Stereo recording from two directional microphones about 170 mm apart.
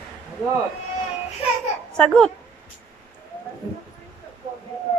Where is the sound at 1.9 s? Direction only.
5° left (ahead or behind).